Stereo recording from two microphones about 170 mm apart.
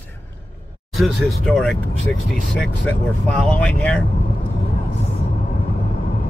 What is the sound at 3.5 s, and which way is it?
Speech, 5° left (ahead or behind).